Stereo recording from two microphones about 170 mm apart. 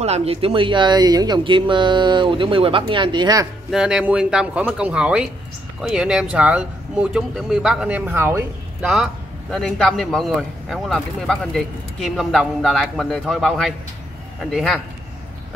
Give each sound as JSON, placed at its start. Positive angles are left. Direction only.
{"t": 0.0, "sound": "speech", "side_deg": -40}
{"t": 3.7, "sound": "a man's voice", "side_deg": -5}
{"t": 8.8, "sound": "a man's voice", "side_deg": 0}